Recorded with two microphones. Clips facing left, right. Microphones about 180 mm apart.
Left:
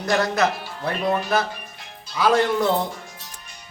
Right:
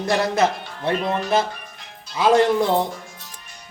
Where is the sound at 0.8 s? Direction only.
25° right (ahead or behind).